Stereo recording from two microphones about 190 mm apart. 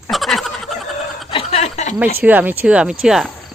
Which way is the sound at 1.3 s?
30° left (ahead or behind).